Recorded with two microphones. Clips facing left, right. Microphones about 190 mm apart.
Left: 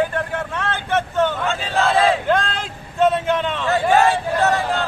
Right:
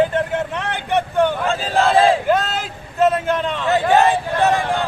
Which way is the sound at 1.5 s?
35° right (ahead or behind).